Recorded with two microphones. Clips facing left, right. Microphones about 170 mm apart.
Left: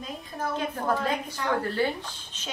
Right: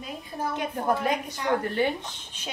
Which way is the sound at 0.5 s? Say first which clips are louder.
Right 1 dB; 15° right (ahead or behind).